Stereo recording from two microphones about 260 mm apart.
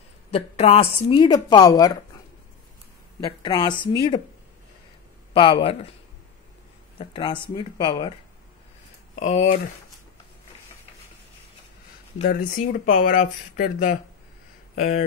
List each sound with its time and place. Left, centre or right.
0.3 s speech: left
3.2 s speech: centre
5.3 s speech: centre
7.0 s speech: centre
9.1 s speech: left
12.2 s speech: left